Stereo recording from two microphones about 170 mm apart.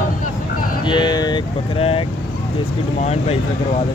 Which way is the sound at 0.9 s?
25° left (ahead or behind).